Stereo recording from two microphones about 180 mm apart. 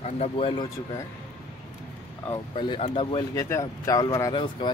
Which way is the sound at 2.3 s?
25° left (ahead or behind).